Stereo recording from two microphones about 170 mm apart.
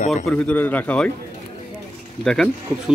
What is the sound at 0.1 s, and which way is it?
A man's voice, 10° left (ahead or behind).